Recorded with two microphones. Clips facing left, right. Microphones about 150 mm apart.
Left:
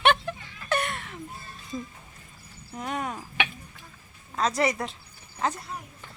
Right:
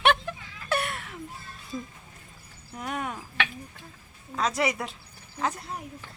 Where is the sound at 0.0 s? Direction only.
Centre (ahead or behind).